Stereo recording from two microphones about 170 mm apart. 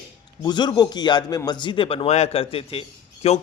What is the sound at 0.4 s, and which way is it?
A man's voice, 25° left (ahead or behind).